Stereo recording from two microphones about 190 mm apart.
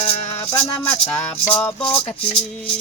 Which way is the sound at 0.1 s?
35° left (ahead or behind).